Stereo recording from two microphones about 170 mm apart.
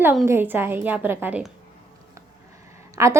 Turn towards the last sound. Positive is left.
turn(degrees=-20)  # may be behind; listen again after turning